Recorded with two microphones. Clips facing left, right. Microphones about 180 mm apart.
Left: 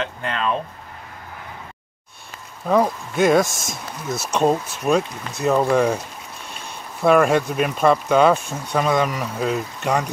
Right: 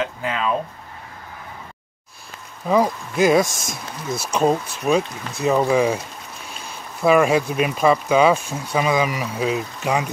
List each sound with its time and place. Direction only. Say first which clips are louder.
0.0 s speech: right 1 dB; 5° right (ahead or behind)
2.6 s speech: even; centre (ahead or behind)